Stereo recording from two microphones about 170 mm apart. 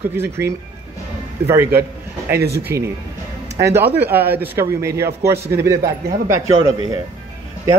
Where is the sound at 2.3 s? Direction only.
70° right (ahead or behind).